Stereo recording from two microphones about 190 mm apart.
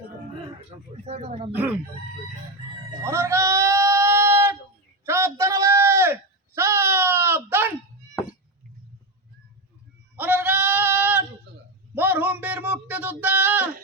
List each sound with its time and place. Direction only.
0.6 s speech: 35° right (ahead or behind)
1.5 s speech: 10° right (ahead or behind)
3.0 s sheep: 15° right (ahead or behind)
5.0 s a sound: 15° right (ahead or behind)
10.2 s goat: 10° right (ahead or behind)
11.9 s a sound: 10° right (ahead or behind)